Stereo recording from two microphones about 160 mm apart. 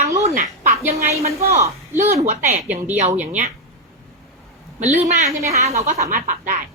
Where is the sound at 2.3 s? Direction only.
45° right (ahead or behind).